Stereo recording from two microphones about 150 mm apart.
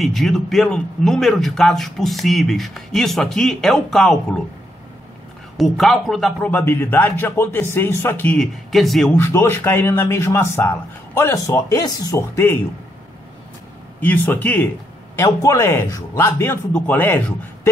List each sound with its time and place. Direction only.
0.0 s a man's voice: centre (ahead or behind)
5.6 s a man's voice: centre (ahead or behind)
6.5 s a man's voice: 15° left (ahead or behind)
9.1 s a man's voice: 15° left (ahead or behind)
13.9 s a man's voice: 10° left (ahead or behind)